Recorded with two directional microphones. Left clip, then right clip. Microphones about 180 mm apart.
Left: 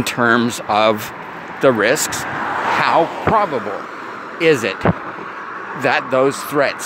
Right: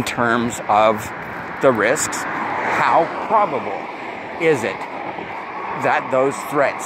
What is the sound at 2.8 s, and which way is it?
Speech, 50° left (ahead or behind).